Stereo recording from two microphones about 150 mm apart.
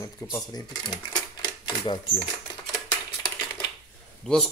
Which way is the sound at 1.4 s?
30° left (ahead or behind).